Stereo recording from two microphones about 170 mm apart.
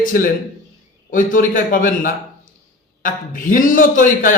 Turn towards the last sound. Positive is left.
turn(degrees=50)  # may be behind; listen again after turning